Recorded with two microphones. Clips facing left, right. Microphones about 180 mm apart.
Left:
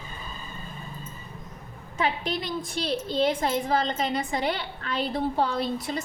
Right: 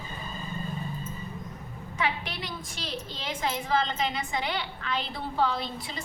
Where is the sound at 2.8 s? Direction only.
35° left (ahead or behind).